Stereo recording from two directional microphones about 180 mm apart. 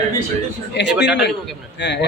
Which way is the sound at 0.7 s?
70° left (ahead or behind).